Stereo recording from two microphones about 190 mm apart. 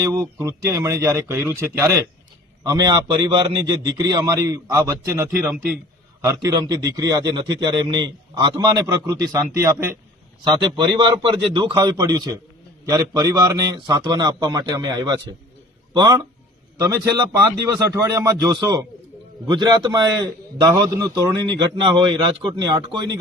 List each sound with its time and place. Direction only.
0.0 s a man's voice: 15° right (ahead or behind)